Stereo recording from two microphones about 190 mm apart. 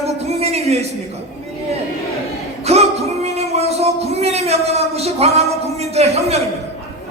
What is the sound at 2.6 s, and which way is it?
Music, 35° right (ahead or behind).